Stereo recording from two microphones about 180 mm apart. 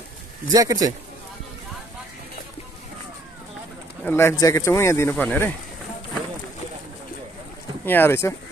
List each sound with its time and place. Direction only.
0.5 s a man's voice: 20° right (ahead or behind)
4.0 s speech: 10° left (ahead or behind)
7.8 s speech: 10° left (ahead or behind)